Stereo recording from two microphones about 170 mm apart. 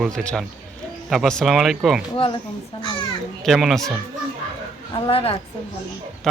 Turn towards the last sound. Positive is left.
turn(degrees=35)  # may be behind; listen again after turning